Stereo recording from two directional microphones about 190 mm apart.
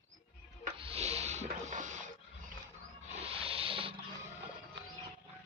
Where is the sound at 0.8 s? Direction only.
30° right (ahead or behind).